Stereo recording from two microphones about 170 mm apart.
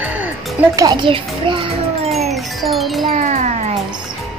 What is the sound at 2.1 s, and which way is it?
Music, centre (ahead or behind).